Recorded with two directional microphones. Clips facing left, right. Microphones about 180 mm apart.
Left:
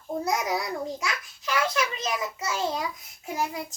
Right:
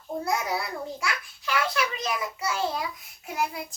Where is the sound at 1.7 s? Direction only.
25° left (ahead or behind).